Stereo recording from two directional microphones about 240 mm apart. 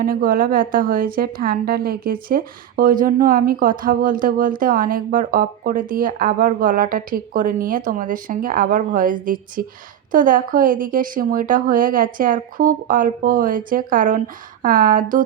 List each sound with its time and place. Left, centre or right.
0.0 s a woman's voice: right